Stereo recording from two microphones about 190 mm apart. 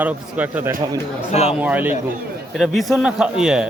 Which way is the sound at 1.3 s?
35° left (ahead or behind).